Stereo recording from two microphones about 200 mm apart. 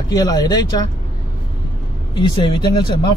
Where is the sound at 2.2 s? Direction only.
20° left (ahead or behind).